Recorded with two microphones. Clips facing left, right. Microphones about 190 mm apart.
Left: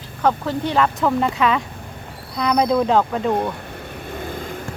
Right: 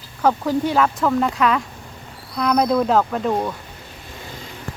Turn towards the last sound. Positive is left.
turn(degrees=55)  # may be behind; listen again after turning